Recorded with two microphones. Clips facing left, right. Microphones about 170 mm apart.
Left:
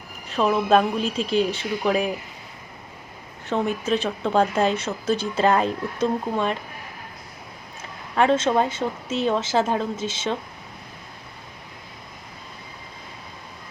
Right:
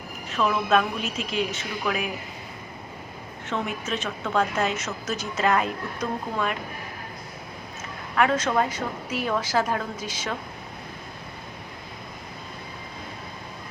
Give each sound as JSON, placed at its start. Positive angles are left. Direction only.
{"t": 0.3, "sound": "a woman's voice", "side_deg": 35}
{"t": 3.5, "sound": "a woman's voice", "side_deg": 35}
{"t": 8.1, "sound": "a woman's voice", "side_deg": 25}